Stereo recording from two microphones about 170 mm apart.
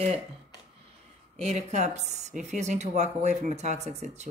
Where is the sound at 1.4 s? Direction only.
40° right (ahead or behind).